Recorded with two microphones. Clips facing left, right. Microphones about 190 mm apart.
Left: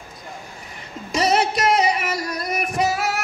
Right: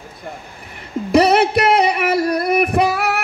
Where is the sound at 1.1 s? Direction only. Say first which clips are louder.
Right 7 dB; 60° right (ahead or behind).